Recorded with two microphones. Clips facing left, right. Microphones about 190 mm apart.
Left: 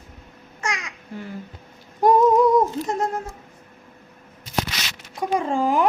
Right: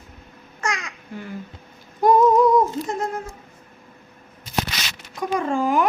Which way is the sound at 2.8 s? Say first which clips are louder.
Left 2 dB; 40° left (ahead or behind).